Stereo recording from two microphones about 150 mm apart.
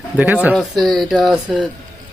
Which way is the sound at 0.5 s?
Centre (ahead or behind).